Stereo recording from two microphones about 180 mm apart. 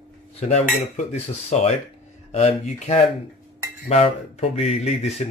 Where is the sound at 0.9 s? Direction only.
35° left (ahead or behind).